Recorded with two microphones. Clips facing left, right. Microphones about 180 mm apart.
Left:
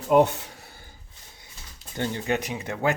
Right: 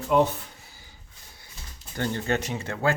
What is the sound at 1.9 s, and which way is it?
Speech, 15° left (ahead or behind).